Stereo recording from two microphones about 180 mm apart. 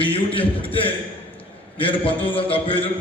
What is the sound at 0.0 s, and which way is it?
Speech, 30° left (ahead or behind).